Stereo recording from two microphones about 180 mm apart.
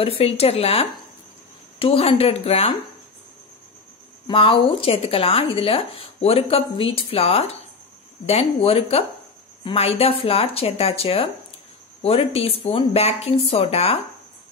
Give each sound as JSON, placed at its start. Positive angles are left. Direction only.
{"t": 0.0, "sound": "speech", "side_deg": 30}
{"t": 4.3, "sound": "speech", "side_deg": 30}